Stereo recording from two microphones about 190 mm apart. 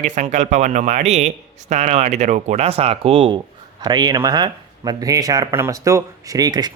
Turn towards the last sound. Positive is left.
turn(degrees=-20)  # may be behind; listen again after turning